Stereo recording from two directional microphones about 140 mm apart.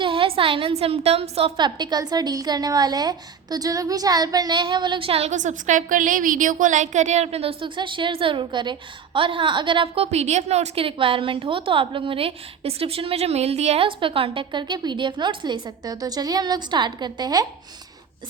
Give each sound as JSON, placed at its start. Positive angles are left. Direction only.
{"t": 0.0, "sound": "a woman's voice", "side_deg": -40}
{"t": 13.8, "sound": "a woman's voice", "side_deg": -40}